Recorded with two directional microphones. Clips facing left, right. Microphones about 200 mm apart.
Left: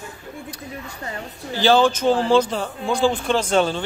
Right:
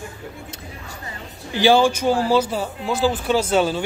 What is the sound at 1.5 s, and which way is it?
Speech, 15° right (ahead or behind).